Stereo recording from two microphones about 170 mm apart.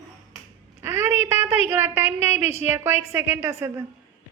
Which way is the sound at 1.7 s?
15° right (ahead or behind).